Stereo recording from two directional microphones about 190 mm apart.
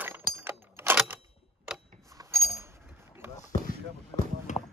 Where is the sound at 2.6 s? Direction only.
15° right (ahead or behind).